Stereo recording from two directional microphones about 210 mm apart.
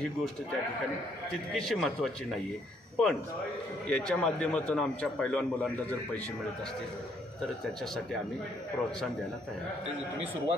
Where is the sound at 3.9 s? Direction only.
5° left (ahead or behind).